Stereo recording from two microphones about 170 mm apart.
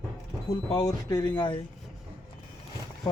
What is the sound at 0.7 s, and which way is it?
Speech, 25° left (ahead or behind).